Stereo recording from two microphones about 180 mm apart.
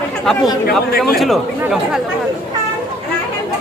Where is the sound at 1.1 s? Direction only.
Centre (ahead or behind).